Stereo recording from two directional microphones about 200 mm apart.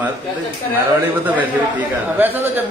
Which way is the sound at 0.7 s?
10° right (ahead or behind).